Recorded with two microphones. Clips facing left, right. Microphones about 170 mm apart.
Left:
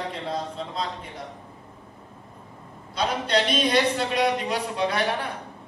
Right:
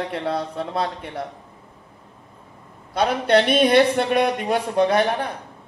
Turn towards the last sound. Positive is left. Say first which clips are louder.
# right 7 dB
turn(degrees=-45)  # may be behind; listen again after turning